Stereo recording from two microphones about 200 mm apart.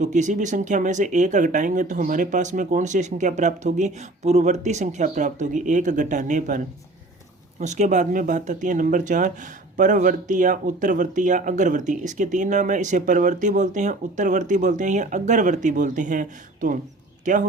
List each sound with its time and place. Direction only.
0.0 s speech: 35° right (ahead or behind)
7.6 s speech: 35° right (ahead or behind)